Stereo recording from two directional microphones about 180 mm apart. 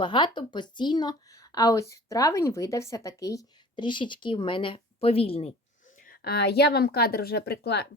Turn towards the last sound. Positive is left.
turn(degrees=65)  # may be behind; listen again after turning